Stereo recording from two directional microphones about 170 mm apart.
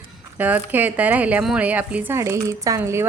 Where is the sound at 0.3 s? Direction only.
10° right (ahead or behind).